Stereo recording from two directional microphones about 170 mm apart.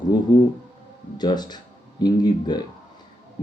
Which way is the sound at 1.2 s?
25° left (ahead or behind).